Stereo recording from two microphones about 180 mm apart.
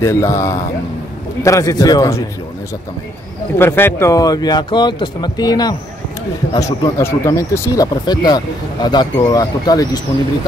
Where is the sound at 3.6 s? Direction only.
15° left (ahead or behind).